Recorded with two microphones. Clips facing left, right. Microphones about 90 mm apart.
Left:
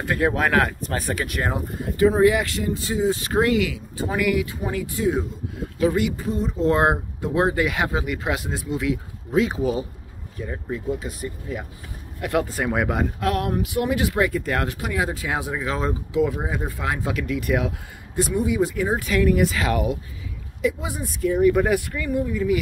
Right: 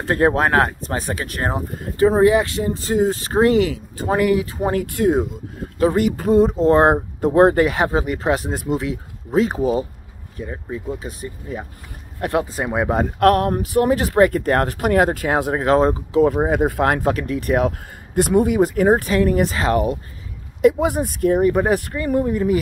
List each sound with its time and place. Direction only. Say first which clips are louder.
0.0 s speech: right 5 dB; 35° right (ahead or behind)
1.2 s speech: right 2 dB; 35° right (ahead or behind)
4.6 s speech: right 6 dB; 50° right (ahead or behind)
6.6 s speech: right 5 dB; 35° right (ahead or behind)
10.4 s speech: right 1 dB; 15° right (ahead or behind)
10.9 s speech: left 1 dB; 30° right (ahead or behind)
13.2 s speech: right 12 dB; 45° right (ahead or behind)
17.2 s speech: right 4 dB; 40° right (ahead or behind)
18.1 s speech: right 6 dB; 60° right (ahead or behind); by 20.0 s 40° right (ahead or behind)
20.6 s speech: right 9 dB; 55° right (ahead or behind)
21.5 s speech: right 1 dB; 35° right (ahead or behind)